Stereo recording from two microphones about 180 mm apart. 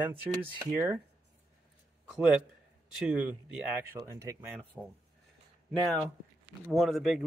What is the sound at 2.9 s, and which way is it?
Speech, 5° right (ahead or behind).